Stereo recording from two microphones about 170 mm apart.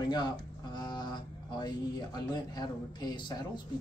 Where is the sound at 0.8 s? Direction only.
25° left (ahead or behind).